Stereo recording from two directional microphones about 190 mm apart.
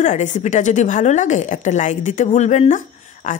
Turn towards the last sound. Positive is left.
turn(degrees=40)  # may be behind; listen again after turning